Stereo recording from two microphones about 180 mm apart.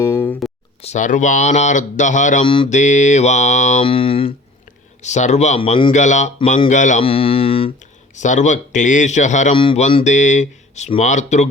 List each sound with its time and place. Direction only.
0.0 s a sound: 15° left (ahead or behind)
0.8 s a man's voice: 40° left (ahead or behind)
2.4 s mantra: 30° left (ahead or behind)
2.6 s speech: 40° left (ahead or behind)
3.8 s speech: 30° left (ahead or behind)
5.9 s a man's voice: 40° left (ahead or behind)
7.0 s speech: 30° left (ahead or behind)
8.1 s a man's voice: 40° left (ahead or behind)